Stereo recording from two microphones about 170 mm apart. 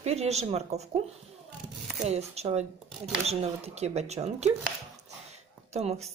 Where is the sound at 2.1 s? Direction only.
40° right (ahead or behind).